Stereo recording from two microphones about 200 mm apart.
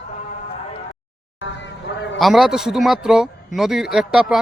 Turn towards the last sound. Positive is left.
turn(degrees=0)  # may be behind; listen again after turning